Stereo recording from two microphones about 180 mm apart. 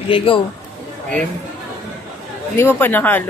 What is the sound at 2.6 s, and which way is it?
Speech, 10° left (ahead or behind).